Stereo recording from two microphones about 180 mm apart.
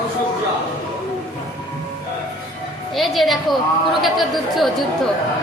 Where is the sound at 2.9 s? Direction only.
Centre (ahead or behind).